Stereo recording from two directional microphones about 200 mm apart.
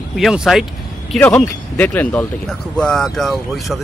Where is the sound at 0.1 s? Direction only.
Centre (ahead or behind).